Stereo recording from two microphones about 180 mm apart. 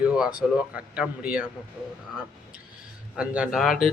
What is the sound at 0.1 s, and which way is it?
A man's voice, 5° right (ahead or behind).